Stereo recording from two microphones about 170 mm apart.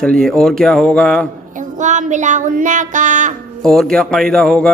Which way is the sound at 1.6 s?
45° right (ahead or behind).